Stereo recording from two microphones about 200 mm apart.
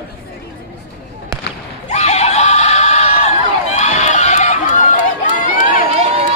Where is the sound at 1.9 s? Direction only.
35° left (ahead or behind).